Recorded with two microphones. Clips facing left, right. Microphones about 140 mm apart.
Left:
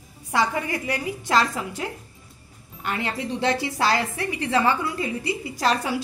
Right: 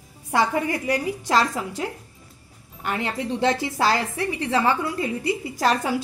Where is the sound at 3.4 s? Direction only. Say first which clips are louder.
Right 2 dB; 45° right (ahead or behind).